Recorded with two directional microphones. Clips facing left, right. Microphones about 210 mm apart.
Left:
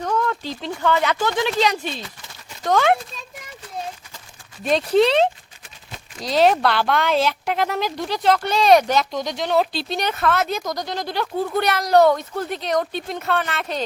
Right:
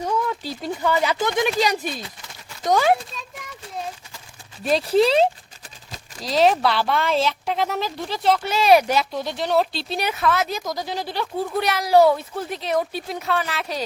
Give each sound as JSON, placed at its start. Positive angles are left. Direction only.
{"t": 0.0, "sound": "a child's voice", "side_deg": -10}
{"t": 4.9, "sound": "speech", "side_deg": -5}